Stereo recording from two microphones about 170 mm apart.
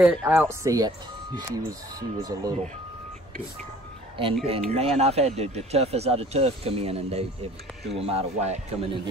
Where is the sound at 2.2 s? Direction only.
20° right (ahead or behind).